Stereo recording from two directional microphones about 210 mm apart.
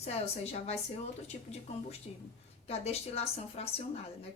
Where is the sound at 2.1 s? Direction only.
30° left (ahead or behind).